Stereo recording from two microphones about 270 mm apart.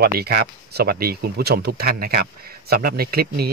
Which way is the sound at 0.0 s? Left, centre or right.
Right.